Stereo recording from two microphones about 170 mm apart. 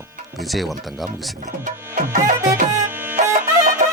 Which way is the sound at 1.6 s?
50° right (ahead or behind).